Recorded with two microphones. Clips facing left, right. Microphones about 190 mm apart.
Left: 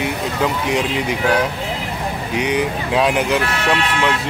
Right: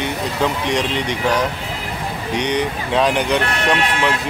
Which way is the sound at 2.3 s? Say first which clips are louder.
Left 1 dB; 5° left (ahead or behind).